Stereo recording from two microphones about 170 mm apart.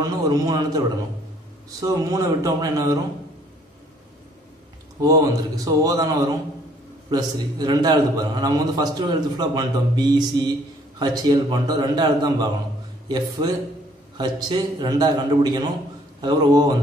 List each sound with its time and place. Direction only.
0.0 s a man's voice: 20° right (ahead or behind)
5.0 s a man's voice: 20° right (ahead or behind)